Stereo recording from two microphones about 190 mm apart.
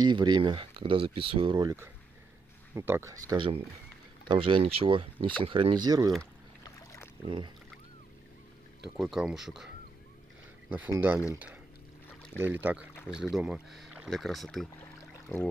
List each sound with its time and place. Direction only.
0.0 s speech: 25° right (ahead or behind)
7.2 s speech: 25° right (ahead or behind)
8.9 s speech: 5° right (ahead or behind)
10.7 s speech: 10° right (ahead or behind)
12.4 s speech: 10° right (ahead or behind)
15.3 s a sound: 15° left (ahead or behind)